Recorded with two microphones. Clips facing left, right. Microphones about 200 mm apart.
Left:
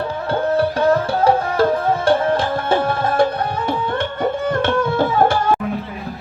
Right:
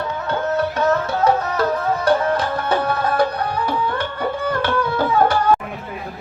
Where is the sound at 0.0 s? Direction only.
30° left (ahead or behind).